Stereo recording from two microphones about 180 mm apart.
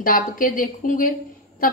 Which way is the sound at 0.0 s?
50° left (ahead or behind).